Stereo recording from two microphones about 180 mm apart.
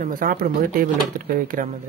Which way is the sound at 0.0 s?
50° right (ahead or behind).